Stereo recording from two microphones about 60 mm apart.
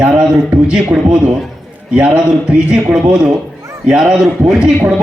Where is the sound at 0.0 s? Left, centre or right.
Centre.